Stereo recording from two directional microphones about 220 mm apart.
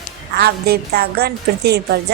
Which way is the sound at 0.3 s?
45° right (ahead or behind).